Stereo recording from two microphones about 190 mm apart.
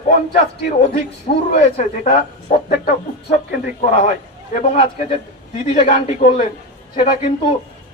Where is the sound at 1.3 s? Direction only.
40° left (ahead or behind).